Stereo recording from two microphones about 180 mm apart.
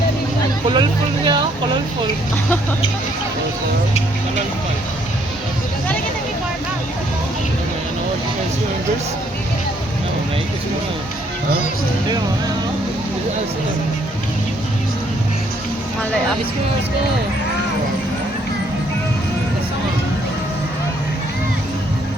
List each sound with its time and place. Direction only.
0.7 s speech: 25° right (ahead or behind)